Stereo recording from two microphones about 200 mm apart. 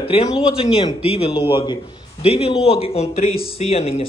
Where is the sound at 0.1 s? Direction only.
25° left (ahead or behind).